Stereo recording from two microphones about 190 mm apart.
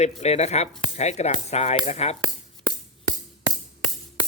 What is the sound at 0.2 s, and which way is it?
Speech, 35° left (ahead or behind).